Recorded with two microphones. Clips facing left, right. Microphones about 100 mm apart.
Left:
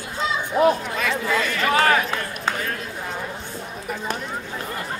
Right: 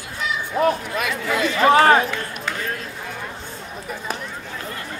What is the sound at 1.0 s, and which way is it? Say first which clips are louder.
Speech: even; 15° right (ahead or behind).